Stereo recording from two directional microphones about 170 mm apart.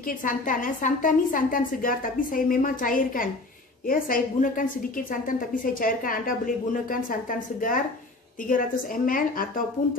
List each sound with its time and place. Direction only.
0.2 s a woman's voice: 50° left (ahead or behind)